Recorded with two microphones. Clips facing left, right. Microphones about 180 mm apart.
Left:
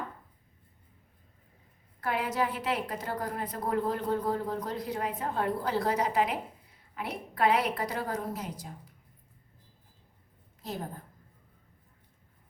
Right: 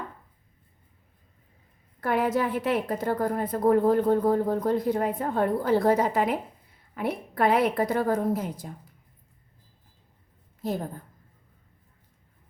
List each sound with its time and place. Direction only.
2.0 s a woman's voice: 50° right (ahead or behind)